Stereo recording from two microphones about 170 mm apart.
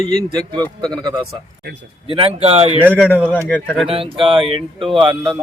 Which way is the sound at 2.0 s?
30° right (ahead or behind).